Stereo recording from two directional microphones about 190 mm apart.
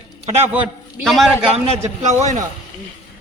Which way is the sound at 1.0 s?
Centre (ahead or behind).